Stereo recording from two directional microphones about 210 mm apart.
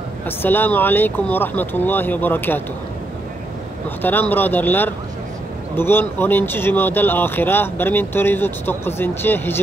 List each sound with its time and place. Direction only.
0.4 s speech: 10° left (ahead or behind)
4.0 s speech: 10° left (ahead or behind)